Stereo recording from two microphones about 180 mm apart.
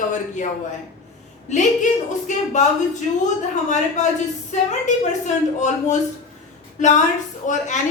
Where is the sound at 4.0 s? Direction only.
40° left (ahead or behind).